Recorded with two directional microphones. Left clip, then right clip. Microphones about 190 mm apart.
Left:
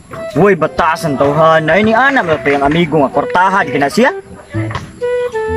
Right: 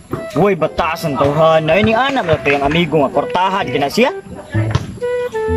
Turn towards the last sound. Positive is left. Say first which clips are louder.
# left 2 dB
turn(degrees=0)  # may be behind; listen again after turning